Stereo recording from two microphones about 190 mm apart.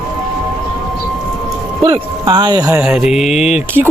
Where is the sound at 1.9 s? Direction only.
25° right (ahead or behind).